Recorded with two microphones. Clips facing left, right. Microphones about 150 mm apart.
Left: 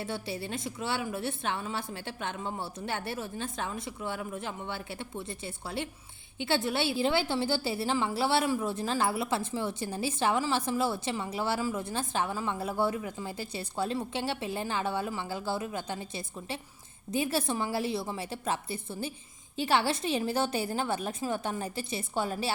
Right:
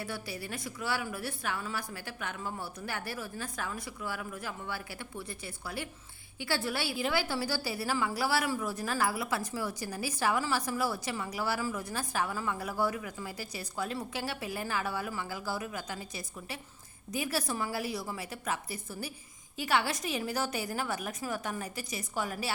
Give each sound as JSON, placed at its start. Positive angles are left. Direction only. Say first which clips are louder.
{"t": 0.0, "sound": "a woman's voice", "louder": "left 4 dB", "side_deg": 25}